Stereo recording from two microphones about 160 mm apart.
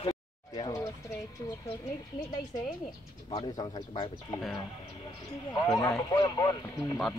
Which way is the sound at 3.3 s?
30° left (ahead or behind).